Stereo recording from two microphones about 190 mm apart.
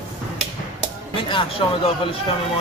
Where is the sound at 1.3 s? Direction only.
25° left (ahead or behind).